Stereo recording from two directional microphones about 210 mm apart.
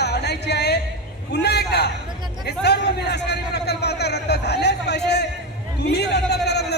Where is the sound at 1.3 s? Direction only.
50° left (ahead or behind).